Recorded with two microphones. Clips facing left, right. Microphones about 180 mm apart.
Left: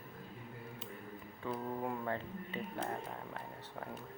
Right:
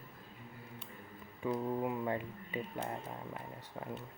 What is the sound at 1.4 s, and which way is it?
Speech, 10° right (ahead or behind).